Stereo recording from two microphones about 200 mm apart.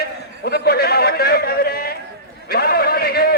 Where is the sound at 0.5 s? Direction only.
50° left (ahead or behind).